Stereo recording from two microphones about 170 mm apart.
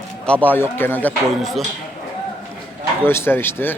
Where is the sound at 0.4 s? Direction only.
10° left (ahead or behind).